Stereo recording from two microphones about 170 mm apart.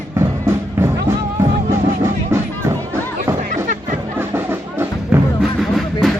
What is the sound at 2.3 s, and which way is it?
Music, 15° right (ahead or behind).